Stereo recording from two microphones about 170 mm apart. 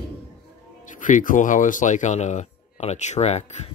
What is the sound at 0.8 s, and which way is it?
Speech, 50° left (ahead or behind).